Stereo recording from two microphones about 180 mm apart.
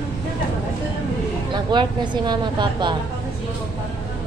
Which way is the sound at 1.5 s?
25° right (ahead or behind).